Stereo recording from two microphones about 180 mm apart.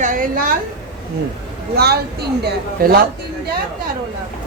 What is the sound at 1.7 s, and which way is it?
A woman's voice, 60° right (ahead or behind).